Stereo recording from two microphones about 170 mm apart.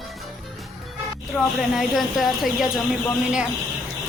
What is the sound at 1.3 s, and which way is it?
A woman's voice, 5° left (ahead or behind).